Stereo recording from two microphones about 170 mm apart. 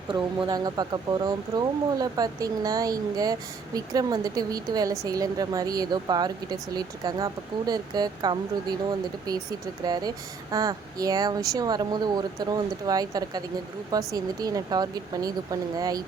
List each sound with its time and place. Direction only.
0.4 s a woman's voice: 25° right (ahead or behind)